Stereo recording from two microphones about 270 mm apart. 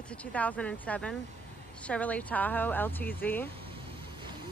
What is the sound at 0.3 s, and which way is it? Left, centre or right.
Speech, centre.